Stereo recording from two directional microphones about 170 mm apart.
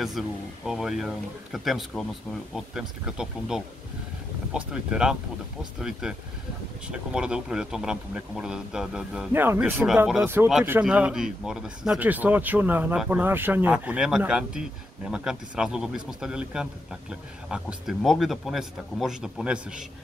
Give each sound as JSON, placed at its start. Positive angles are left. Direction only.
{"t": 0.2, "sound": "speech", "side_deg": 0}